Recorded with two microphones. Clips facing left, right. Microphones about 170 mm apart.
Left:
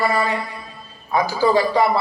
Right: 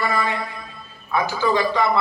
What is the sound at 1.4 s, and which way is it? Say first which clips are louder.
Speech: left 4 dB; 35° left (ahead or behind).